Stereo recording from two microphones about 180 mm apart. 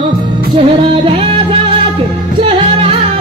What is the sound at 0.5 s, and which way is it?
Music, 30° right (ahead or behind).